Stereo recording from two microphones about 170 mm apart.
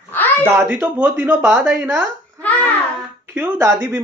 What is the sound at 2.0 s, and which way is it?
Speech, 10° left (ahead or behind).